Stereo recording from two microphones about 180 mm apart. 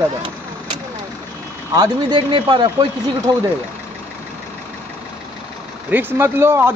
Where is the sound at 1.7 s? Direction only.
25° right (ahead or behind).